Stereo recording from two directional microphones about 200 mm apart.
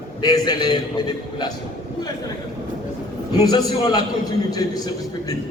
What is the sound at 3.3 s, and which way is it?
A man's voice, 20° left (ahead or behind).